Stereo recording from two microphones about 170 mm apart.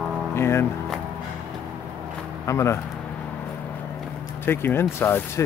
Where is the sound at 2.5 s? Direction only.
15° left (ahead or behind).